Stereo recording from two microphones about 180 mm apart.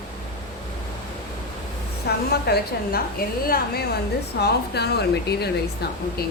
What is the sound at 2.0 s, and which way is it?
Speech, 60° left (ahead or behind).